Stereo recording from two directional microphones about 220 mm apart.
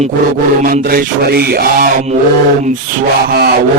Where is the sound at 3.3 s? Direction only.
45° right (ahead or behind).